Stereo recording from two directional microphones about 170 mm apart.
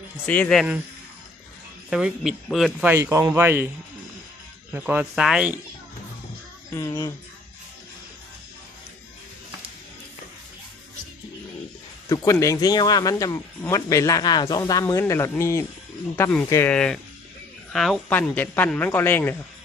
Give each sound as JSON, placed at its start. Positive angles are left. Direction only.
{"t": 0.3, "sound": "speech", "side_deg": 5}
{"t": 1.9, "sound": "speech", "side_deg": -5}
{"t": 2.9, "sound": "speech", "side_deg": -15}
{"t": 4.7, "sound": "speech", "side_deg": -10}
{"t": 6.7, "sound": "speech", "side_deg": 20}
{"t": 12.0, "sound": "a woman's voice", "side_deg": 20}